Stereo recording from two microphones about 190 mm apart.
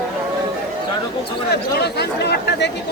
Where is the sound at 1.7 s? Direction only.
60° left (ahead or behind).